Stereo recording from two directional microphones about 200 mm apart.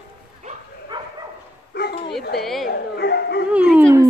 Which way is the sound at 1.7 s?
55° left (ahead or behind).